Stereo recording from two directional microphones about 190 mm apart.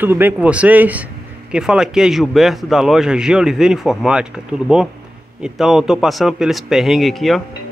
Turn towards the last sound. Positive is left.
turn(degrees=0)  # may be behind; listen again after turning